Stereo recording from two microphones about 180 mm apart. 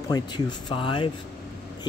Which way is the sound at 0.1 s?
25° left (ahead or behind).